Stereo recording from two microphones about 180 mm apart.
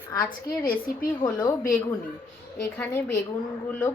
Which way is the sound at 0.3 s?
55° left (ahead or behind).